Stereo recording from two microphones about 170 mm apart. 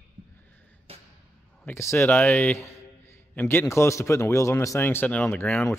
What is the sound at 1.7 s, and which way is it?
A man's voice, 15° left (ahead or behind).